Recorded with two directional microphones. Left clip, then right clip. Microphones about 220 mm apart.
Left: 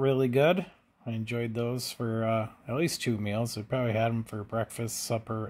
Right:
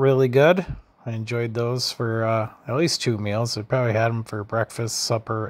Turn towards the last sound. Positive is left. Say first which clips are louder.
# right 8 dB
turn(degrees=-20)  # may be behind; listen again after turning